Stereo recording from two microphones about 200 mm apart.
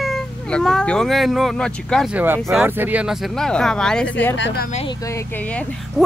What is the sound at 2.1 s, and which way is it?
A woman's voice, 10° right (ahead or behind).